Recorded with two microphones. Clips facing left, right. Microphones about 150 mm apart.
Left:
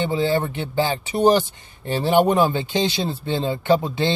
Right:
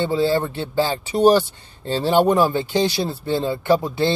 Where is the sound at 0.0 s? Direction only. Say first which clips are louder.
Right 2 dB; 15° left (ahead or behind).